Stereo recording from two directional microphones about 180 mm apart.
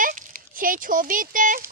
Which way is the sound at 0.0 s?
50° right (ahead or behind).